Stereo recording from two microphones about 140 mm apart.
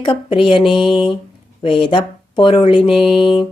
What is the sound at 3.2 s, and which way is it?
Speech, 40° left (ahead or behind).